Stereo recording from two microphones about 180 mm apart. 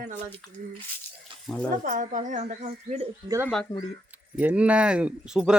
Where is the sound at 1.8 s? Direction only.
45° right (ahead or behind).